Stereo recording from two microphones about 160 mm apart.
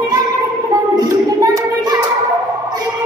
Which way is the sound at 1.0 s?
20° right (ahead or behind).